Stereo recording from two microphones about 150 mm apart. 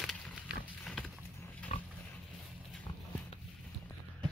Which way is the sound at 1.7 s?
45° left (ahead or behind).